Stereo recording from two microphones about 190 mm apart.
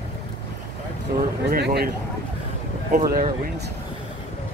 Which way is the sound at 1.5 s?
55° right (ahead or behind).